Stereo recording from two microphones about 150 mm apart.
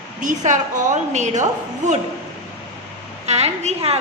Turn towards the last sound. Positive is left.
turn(degrees=-45)  # may be behind; listen again after turning